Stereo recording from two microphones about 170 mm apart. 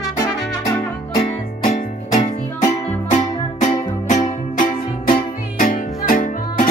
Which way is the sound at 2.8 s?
40° left (ahead or behind).